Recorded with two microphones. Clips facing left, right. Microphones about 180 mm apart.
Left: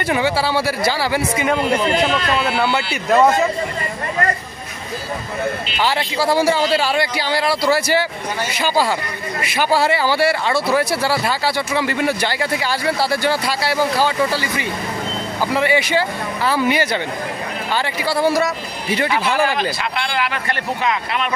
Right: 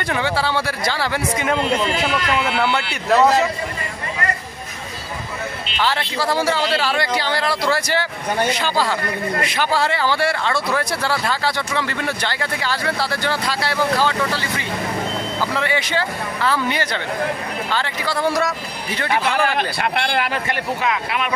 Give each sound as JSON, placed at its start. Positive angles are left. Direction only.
{"t": 0.0, "sound": "speech", "side_deg": 10}
{"t": 5.8, "sound": "speech", "side_deg": 10}
{"t": 19.0, "sound": "speech", "side_deg": -55}
{"t": 20.8, "sound": "speech", "side_deg": -5}